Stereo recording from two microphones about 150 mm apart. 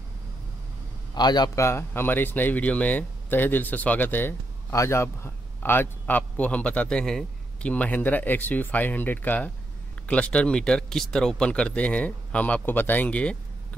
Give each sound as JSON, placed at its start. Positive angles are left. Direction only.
{"t": 1.1, "sound": "speech", "side_deg": 30}